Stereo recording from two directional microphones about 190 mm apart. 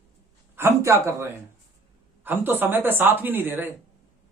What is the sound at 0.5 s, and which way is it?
Speech, 15° right (ahead or behind).